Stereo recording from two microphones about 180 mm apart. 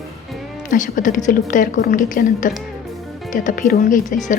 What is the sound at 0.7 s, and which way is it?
A woman's voice, 45° left (ahead or behind).